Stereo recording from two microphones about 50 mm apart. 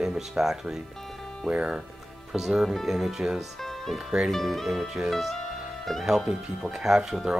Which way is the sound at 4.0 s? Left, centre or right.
Centre.